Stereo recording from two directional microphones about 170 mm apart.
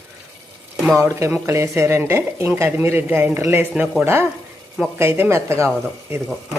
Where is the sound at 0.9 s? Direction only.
15° right (ahead or behind).